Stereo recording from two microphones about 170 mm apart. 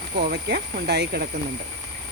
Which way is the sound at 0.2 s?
75° right (ahead or behind).